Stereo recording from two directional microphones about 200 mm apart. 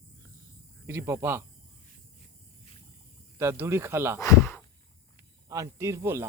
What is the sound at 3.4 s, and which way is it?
Speech, 10° right (ahead or behind).